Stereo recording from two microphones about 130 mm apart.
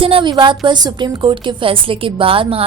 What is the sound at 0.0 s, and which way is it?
A woman's voice, 40° right (ahead or behind).